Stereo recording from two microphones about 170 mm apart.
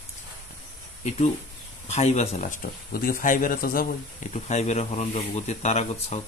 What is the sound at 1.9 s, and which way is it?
Speech, 40° left (ahead or behind).